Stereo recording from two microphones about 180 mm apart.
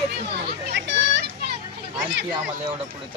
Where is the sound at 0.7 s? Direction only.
85° right.